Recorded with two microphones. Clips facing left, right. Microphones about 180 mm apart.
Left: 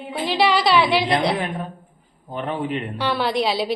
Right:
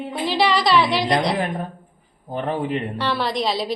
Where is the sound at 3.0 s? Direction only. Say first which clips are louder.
Left 4 dB; centre (ahead or behind).